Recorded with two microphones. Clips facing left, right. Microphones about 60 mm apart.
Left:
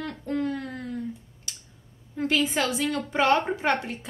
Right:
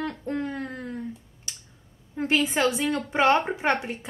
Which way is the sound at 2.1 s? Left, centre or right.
Right.